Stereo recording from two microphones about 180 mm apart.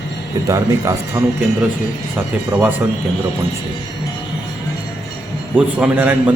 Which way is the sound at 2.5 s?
15° right (ahead or behind).